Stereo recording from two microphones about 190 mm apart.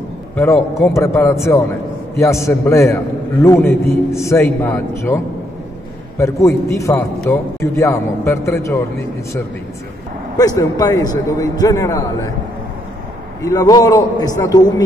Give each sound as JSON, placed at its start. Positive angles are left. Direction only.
{"t": 0.4, "sound": "a man's voice", "side_deg": 15}
{"t": 10.3, "sound": "a man's voice", "side_deg": 20}
{"t": 13.4, "sound": "a man's voice", "side_deg": 15}